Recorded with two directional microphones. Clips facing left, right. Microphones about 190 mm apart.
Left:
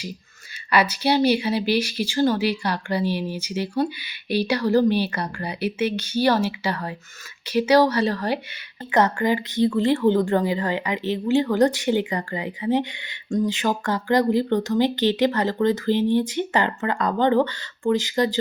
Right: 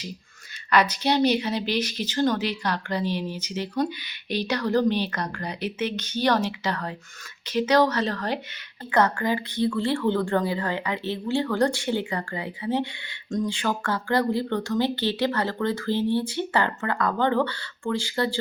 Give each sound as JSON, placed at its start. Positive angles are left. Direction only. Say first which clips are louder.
{"t": 0.7, "sound": "speech", "louder": "left 2 dB", "side_deg": 10}
{"t": 8.9, "sound": "speech", "louder": "left 3 dB", "side_deg": 20}